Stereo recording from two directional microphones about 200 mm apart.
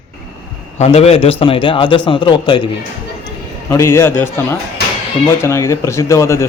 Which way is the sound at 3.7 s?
10° left (ahead or behind).